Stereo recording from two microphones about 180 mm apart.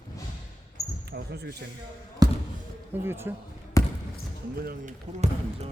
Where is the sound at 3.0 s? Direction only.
15° right (ahead or behind).